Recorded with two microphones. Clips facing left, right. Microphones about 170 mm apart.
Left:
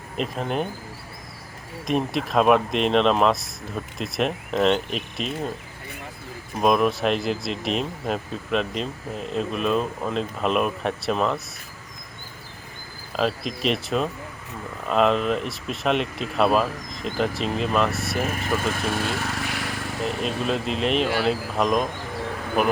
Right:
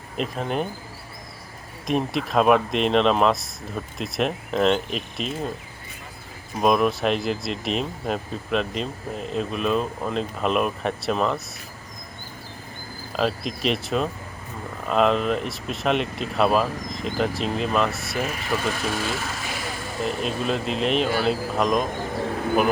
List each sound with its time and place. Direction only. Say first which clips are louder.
0.2 s speech: even; centre (ahead or behind)
1.9 s speech: even; centre (ahead or behind)
6.6 s speech: even; centre (ahead or behind)
13.1 s speech: even; centre (ahead or behind)
18.3 s speech: left 1 dB; 45° left (ahead or behind); by 19.8 s 70° left (ahead or behind)
20.1 s speech: even; centre (ahead or behind)